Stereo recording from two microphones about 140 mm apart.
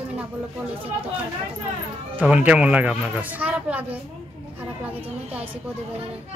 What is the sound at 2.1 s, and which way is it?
A man's voice, 10° right (ahead or behind).